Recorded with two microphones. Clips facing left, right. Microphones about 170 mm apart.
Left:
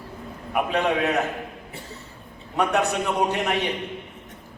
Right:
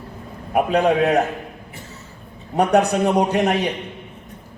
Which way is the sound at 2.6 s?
40° right (ahead or behind).